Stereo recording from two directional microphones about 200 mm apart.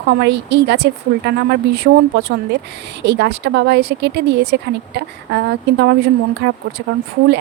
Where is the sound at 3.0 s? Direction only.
60° right (ahead or behind).